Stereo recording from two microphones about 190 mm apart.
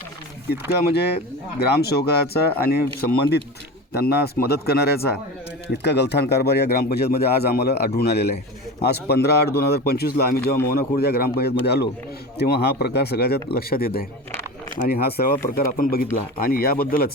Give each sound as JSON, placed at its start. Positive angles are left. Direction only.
{"t": 0.9, "sound": "speech", "side_deg": 60}
{"t": 3.9, "sound": "speech", "side_deg": 55}